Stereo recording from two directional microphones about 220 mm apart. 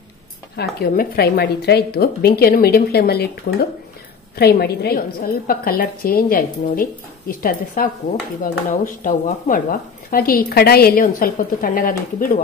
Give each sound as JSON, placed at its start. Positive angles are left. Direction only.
{"t": 0.6, "sound": "a woman's voice", "side_deg": 45}